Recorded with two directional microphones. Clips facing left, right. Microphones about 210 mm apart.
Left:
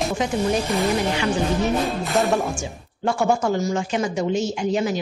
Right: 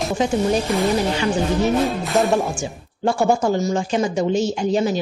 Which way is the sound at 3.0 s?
30° right (ahead or behind).